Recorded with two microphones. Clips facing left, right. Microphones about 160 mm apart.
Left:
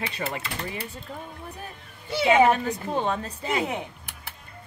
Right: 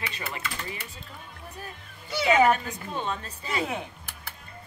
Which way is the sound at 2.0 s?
25° left (ahead or behind).